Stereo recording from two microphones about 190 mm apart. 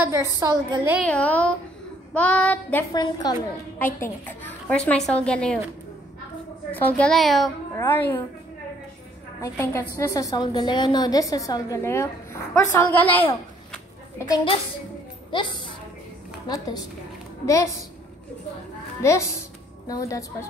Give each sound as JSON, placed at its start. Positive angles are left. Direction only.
{"t": 0.0, "sound": "a woman's voice", "side_deg": -15}
{"t": 1.0, "sound": "a woman's voice", "side_deg": 5}
{"t": 2.9, "sound": "a woman's voice", "side_deg": 20}
{"t": 6.7, "sound": "a woman's voice", "side_deg": 10}
{"t": 7.7, "sound": "a woman's voice", "side_deg": 10}
{"t": 9.4, "sound": "a woman's voice", "side_deg": 15}
{"t": 19.0, "sound": "a woman's voice", "side_deg": 15}